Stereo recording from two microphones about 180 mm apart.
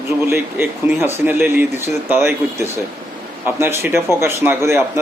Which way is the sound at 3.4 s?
10° right (ahead or behind).